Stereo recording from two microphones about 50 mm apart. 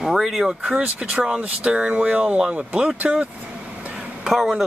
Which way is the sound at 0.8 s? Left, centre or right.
Right.